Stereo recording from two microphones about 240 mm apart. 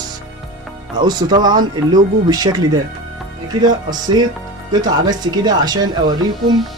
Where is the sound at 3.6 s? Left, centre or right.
Centre.